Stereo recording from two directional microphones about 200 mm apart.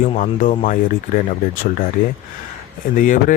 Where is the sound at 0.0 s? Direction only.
40° left (ahead or behind).